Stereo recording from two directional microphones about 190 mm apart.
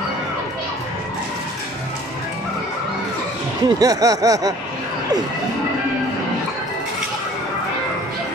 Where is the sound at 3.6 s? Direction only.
20° right (ahead or behind).